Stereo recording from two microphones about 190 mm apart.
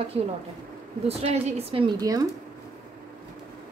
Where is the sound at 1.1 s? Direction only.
30° right (ahead or behind).